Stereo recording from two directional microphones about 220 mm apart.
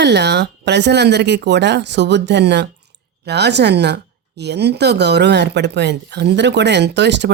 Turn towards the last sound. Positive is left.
turn(degrees=-50)  # may be behind; listen again after turning